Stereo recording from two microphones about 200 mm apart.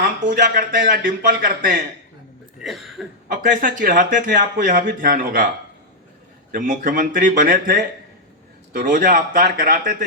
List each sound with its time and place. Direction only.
0.0 s speech: 45° right (ahead or behind)
2.6 s speech: centre (ahead or behind)
3.4 s speech: 45° right (ahead or behind)
6.5 s speech: 45° right (ahead or behind)